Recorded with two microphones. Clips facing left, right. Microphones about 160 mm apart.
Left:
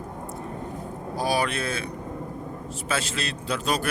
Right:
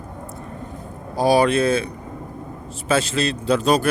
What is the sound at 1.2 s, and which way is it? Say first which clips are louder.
Speech: right 9 dB; 25° right (ahead or behind).